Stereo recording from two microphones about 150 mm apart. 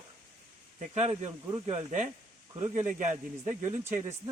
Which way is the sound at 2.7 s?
55° right (ahead or behind).